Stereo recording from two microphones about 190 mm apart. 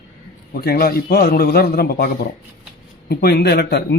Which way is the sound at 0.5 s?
55° left (ahead or behind).